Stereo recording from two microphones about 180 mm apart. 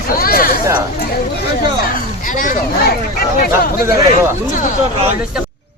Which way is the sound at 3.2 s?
60° left (ahead or behind).